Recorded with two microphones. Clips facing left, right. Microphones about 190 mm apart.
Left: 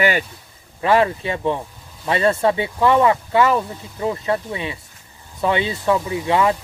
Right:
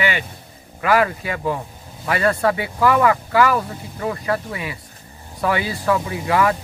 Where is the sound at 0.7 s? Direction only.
25° left (ahead or behind).